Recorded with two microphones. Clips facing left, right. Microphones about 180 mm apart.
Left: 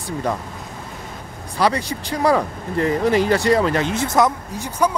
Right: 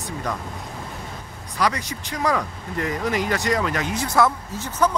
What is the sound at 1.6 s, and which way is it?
Speech, 30° left (ahead or behind).